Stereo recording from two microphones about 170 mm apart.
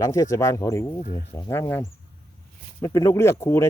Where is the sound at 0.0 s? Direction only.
20° left (ahead or behind).